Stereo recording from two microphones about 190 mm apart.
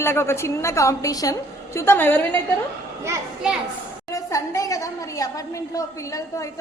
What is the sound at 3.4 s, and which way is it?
Speech, 5° right (ahead or behind).